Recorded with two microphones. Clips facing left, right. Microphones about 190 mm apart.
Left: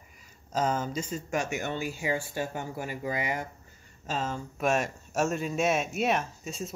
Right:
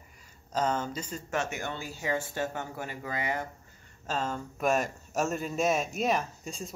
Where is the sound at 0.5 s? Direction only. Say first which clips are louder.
Left 1 dB; 10° left (ahead or behind).